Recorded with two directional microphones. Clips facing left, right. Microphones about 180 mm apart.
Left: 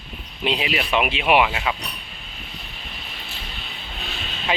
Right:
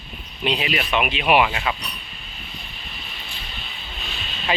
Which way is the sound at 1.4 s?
5° left (ahead or behind).